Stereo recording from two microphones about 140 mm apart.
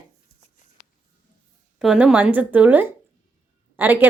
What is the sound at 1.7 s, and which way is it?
A woman's voice, 5° right (ahead or behind).